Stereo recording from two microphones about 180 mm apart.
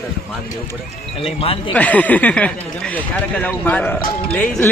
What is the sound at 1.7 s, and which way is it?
Speech, 10° left (ahead or behind).